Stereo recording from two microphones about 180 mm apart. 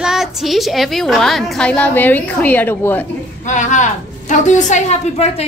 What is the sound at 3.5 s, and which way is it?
A woman's voice, 45° left (ahead or behind).